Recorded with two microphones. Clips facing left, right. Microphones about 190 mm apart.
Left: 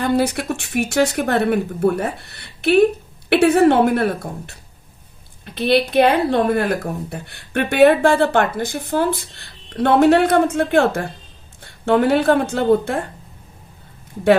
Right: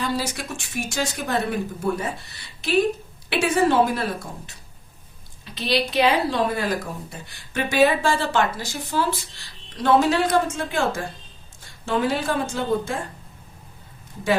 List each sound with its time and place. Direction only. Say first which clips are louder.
0.0 s speech: left 8 dB; 55° left (ahead or behind)